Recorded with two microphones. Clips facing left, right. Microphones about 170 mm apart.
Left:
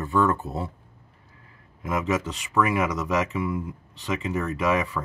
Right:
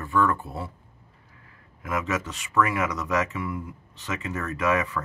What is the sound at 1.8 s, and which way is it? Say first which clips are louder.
Speech: left 3 dB; 20° left (ahead or behind).